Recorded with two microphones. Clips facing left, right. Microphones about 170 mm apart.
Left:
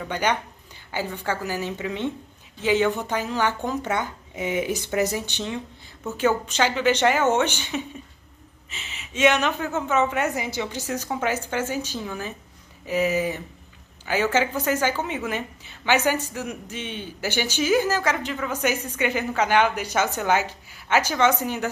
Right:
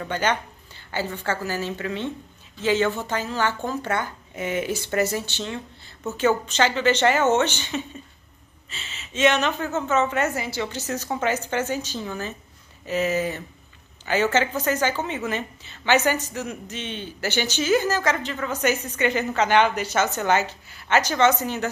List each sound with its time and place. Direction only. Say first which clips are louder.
0.1 s a woman's voice: even; 15° left (ahead or behind)